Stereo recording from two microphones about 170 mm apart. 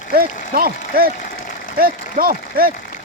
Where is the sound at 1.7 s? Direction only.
60° right (ahead or behind).